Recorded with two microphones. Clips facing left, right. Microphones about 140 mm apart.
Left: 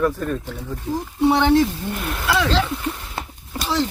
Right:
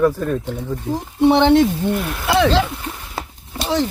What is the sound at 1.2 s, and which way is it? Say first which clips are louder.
Speech: right 4 dB; 25° right (ahead or behind).